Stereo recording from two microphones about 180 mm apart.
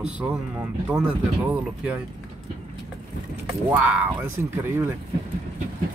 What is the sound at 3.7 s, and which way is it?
Speech, 10° right (ahead or behind).